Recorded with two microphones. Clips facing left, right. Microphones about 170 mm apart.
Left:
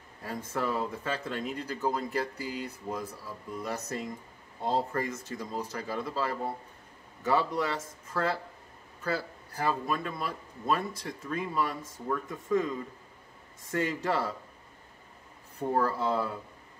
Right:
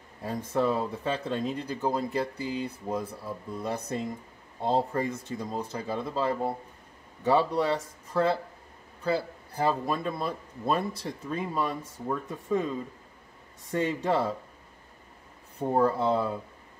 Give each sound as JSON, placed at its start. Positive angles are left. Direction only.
{"t": 0.2, "sound": "speech", "side_deg": -25}
{"t": 15.7, "sound": "speech", "side_deg": -25}